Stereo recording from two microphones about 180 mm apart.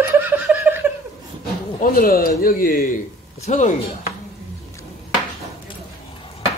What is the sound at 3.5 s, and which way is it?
Speech, 40° left (ahead or behind).